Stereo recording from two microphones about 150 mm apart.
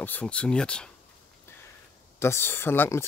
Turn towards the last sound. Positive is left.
turn(degrees=15)  # may be behind; listen again after turning